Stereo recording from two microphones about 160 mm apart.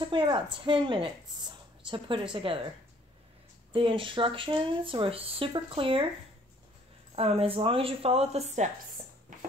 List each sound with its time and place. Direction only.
0.1 s speech: 30° right (ahead or behind)
3.7 s speech: 35° right (ahead or behind)
7.2 s speech: 40° right (ahead or behind)